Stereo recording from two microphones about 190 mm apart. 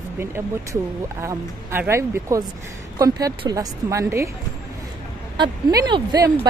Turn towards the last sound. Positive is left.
turn(degrees=-25)  # may be behind; listen again after turning